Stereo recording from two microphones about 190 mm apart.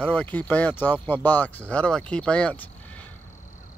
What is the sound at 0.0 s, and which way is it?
A man's voice, 10° left (ahead or behind).